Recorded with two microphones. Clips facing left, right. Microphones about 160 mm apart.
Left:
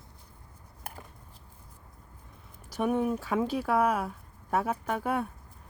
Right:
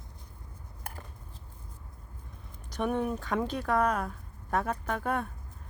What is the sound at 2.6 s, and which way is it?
Speech, 5° left (ahead or behind).